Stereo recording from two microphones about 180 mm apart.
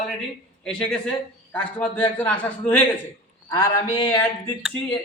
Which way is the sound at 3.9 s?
30° left (ahead or behind).